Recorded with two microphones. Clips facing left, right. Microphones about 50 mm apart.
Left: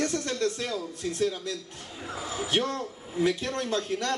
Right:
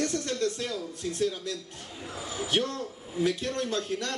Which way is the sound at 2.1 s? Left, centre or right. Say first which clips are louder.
Left 1 dB; left.